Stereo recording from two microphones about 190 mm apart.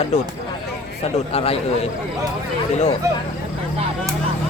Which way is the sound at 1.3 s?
30° left (ahead or behind).